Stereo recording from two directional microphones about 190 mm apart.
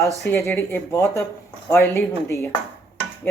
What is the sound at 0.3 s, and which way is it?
Speech, 15° left (ahead or behind).